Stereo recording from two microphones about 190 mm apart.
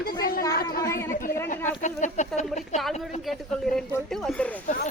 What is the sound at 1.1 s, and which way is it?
Speech, 45° left (ahead or behind).